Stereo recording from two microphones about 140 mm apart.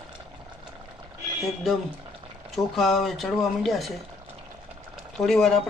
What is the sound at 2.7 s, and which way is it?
Speech, centre (ahead or behind).